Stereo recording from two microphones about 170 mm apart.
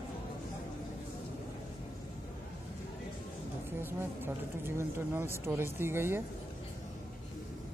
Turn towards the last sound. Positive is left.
turn(degrees=-15)  # may be behind; listen again after turning